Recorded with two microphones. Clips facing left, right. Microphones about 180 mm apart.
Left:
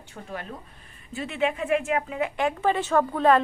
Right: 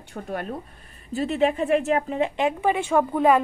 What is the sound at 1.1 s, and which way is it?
Speech, 40° right (ahead or behind).